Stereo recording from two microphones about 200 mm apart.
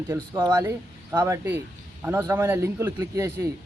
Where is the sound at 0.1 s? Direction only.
20° right (ahead or behind).